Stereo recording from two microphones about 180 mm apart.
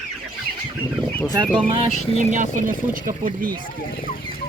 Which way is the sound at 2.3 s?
45° right (ahead or behind).